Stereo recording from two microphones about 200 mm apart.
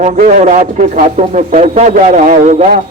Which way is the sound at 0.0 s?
40° right (ahead or behind).